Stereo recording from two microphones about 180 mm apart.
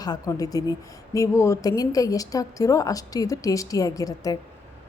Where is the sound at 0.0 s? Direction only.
20° left (ahead or behind).